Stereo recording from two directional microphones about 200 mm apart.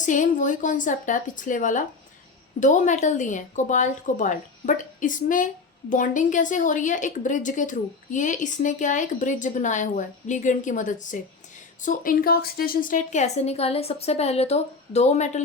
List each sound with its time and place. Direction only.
0.0 s a woman's voice: 40° left (ahead or behind)